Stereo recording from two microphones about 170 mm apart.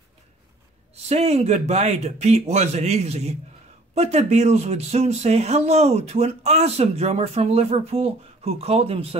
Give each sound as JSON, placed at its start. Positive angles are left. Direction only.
{"t": 1.0, "sound": "speech", "side_deg": -40}